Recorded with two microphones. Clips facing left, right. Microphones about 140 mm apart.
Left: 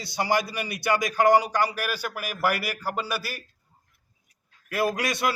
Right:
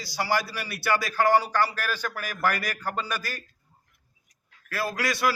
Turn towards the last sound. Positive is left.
turn(degrees=20)  # may be behind; listen again after turning